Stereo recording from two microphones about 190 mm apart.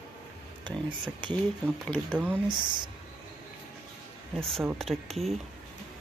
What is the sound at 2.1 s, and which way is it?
Speech, 5° right (ahead or behind).